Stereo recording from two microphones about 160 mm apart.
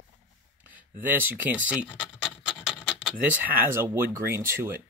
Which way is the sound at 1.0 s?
10° right (ahead or behind).